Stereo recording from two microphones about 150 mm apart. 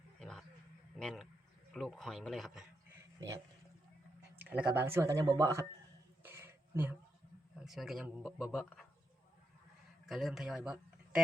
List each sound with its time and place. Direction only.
0.2 s roaring cats: 5° left (ahead or behind)
0.9 s speech: 5° left (ahead or behind)
4.4 s speech: 10° right (ahead or behind)
6.2 s a sound: 15° right (ahead or behind)
7.6 s speech: centre (ahead or behind)
10.1 s speech: centre (ahead or behind)